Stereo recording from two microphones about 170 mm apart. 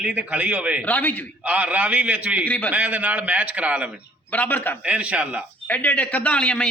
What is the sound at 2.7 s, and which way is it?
A man's voice, 10° right (ahead or behind).